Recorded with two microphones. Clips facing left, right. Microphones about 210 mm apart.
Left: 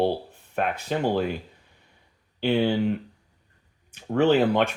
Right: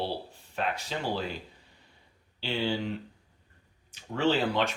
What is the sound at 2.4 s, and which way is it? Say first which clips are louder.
Speech: left 9 dB; 60° left (ahead or behind).